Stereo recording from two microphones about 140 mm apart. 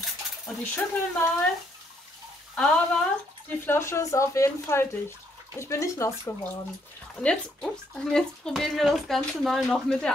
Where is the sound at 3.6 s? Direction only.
20° left (ahead or behind).